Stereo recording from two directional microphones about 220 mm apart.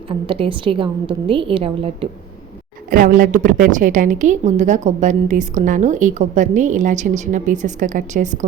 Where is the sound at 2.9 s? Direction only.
40° right (ahead or behind).